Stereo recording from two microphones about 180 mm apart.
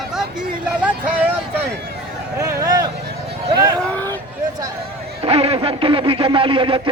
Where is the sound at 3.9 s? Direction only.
10° left (ahead or behind).